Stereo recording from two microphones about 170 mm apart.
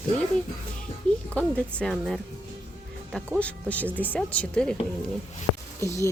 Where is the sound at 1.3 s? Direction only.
10° left (ahead or behind).